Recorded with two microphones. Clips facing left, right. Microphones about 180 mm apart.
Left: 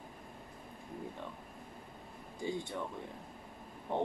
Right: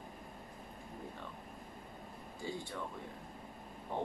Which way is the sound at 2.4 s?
15° left (ahead or behind).